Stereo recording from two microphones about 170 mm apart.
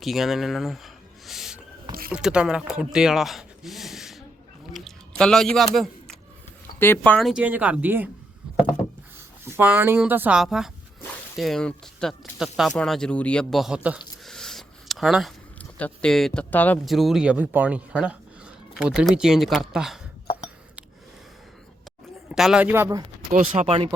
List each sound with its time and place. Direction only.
0.0 s speech: centre (ahead or behind)
1.3 s owl: 5° right (ahead or behind)
2.0 s speech: 5° right (ahead or behind)
4.7 s a sound: 5° left (ahead or behind)
6.7 s speech: 15° left (ahead or behind); by 8.1 s 10° right (ahead or behind)
9.4 s speech: 10° right (ahead or behind)
14.3 s a sound: 5° left (ahead or behind)
15.5 s speech: 5° left (ahead or behind)
16.8 s speech: centre (ahead or behind)
22.3 s speech: 5° right (ahead or behind)
23.3 s speech: 40° right (ahead or behind)